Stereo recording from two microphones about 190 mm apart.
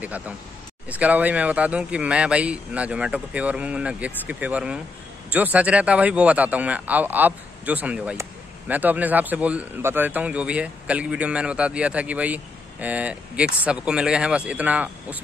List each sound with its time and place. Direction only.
0.8 s speech: 5° right (ahead or behind)